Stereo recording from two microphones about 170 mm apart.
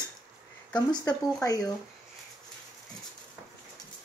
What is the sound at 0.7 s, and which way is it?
Speech, 25° left (ahead or behind).